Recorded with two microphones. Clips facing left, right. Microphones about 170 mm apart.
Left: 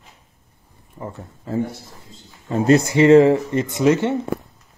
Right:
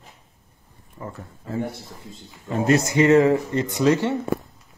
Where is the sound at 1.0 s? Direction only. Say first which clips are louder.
Left 3 dB; 25° left (ahead or behind).